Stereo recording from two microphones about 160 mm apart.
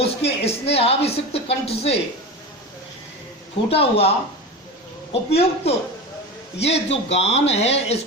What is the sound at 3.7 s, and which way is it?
Speech, 40° left (ahead or behind).